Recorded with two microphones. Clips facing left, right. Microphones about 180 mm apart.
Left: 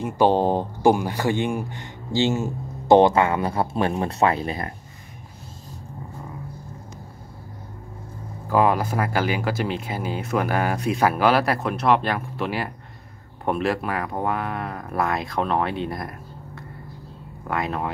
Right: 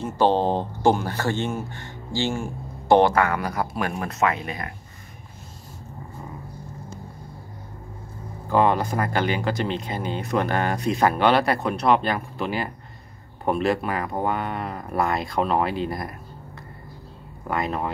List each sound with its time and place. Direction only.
0.0 s speech: 10° left (ahead or behind); by 4.7 s 30° left (ahead or behind)
8.5 s speech: 5° left (ahead or behind)
17.5 s speech: centre (ahead or behind)